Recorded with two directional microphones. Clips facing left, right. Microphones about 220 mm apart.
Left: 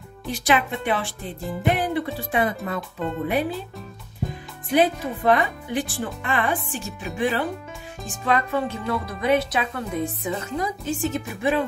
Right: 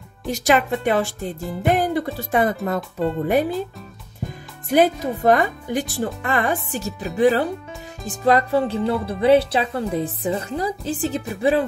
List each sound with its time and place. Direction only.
0.3 s speech: 45° right (ahead or behind)
4.6 s a woman's voice: 45° right (ahead or behind)